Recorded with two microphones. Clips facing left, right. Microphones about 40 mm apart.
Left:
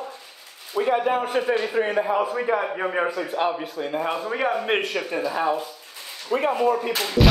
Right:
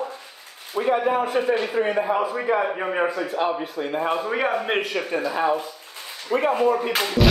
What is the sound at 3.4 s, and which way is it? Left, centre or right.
Speech, centre.